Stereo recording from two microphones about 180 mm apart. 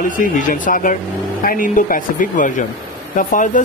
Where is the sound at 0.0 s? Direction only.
50° left (ahead or behind).